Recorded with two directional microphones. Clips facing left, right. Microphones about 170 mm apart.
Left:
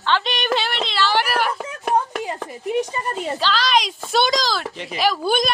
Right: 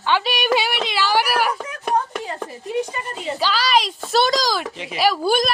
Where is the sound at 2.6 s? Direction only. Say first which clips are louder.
Left 2 dB; 20° left (ahead or behind).